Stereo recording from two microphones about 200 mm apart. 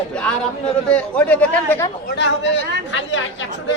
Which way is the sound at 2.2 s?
65° left (ahead or behind).